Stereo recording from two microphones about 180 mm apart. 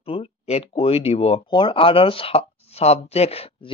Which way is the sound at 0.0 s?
30° left (ahead or behind).